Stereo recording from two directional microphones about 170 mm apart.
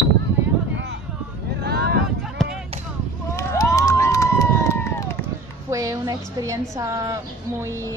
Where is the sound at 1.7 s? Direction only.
70° right (ahead or behind).